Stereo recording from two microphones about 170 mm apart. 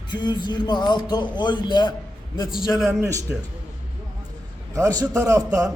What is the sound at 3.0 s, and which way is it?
Speech, 15° right (ahead or behind).